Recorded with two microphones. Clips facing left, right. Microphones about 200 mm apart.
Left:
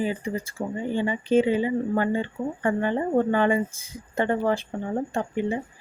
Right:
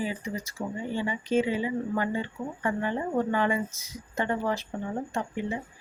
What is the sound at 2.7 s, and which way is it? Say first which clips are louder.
Speech: left 5 dB; 50° left (ahead or behind).